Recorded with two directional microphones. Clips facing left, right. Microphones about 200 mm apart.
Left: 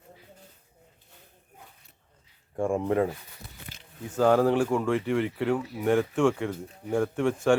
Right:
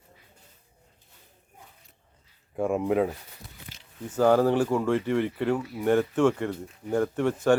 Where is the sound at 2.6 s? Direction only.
5° right (ahead or behind).